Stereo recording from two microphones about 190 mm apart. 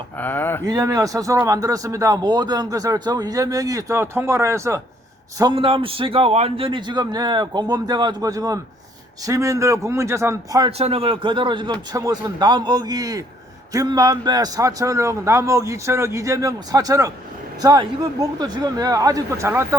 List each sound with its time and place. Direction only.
0.2 s speech: 10° left (ahead or behind)
0.6 s a man's voice: 20° right (ahead or behind)
5.4 s a man's voice: 25° right (ahead or behind)
10.7 s a man's voice: 35° right (ahead or behind); by 19.6 s 15° right (ahead or behind)